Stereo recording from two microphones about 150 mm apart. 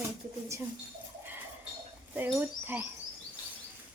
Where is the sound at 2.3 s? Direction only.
15° right (ahead or behind).